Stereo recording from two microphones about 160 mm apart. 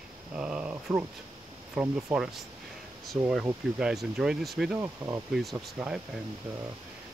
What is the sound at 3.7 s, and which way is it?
Speech, 5° right (ahead or behind).